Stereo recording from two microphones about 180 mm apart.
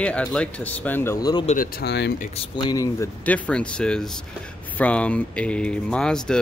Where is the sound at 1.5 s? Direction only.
55° left (ahead or behind); by 2.1 s 70° left (ahead or behind).